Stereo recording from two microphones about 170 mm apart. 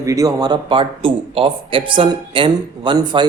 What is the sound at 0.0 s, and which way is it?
A man's voice, 20° right (ahead or behind).